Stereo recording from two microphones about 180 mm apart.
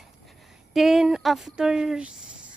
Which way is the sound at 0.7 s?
Centre (ahead or behind).